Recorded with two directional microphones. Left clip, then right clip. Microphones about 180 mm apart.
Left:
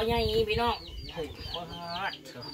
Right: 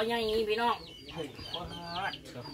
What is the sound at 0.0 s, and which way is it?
Speech, 5° left (ahead or behind).